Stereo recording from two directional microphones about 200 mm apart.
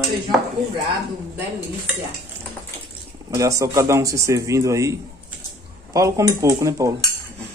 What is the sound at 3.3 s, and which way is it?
Speech, 15° right (ahead or behind).